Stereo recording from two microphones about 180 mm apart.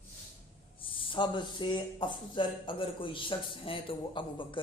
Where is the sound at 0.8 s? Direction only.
30° left (ahead or behind).